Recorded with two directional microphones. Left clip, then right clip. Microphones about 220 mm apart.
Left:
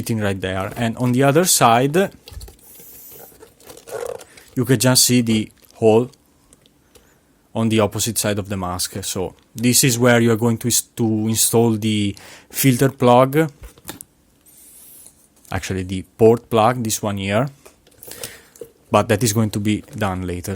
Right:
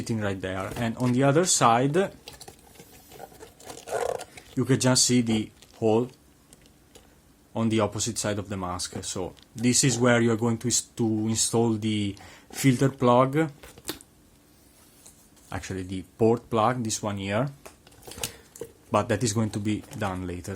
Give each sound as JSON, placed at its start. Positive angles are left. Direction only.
{"t": 0.0, "sound": "speech", "side_deg": 35}
{"t": 2.2, "sound": "tearing", "side_deg": 0}
{"t": 4.5, "sound": "speech", "side_deg": 35}
{"t": 7.5, "sound": "speech", "side_deg": 35}
{"t": 15.4, "sound": "speech", "side_deg": 40}
{"t": 18.5, "sound": "a sound", "side_deg": 0}
{"t": 18.9, "sound": "speech", "side_deg": 40}